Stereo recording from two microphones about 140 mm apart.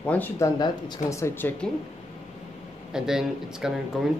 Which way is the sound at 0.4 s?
25° left (ahead or behind).